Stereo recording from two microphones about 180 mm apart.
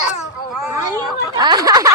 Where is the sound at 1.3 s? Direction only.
20° right (ahead or behind).